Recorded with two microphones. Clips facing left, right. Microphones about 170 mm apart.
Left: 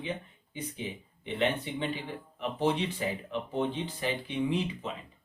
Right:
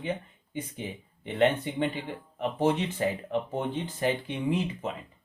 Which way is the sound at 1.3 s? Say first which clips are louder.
Right 5 dB; 50° right (ahead or behind).